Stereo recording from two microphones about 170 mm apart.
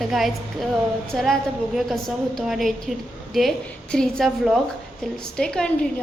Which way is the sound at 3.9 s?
5° left (ahead or behind).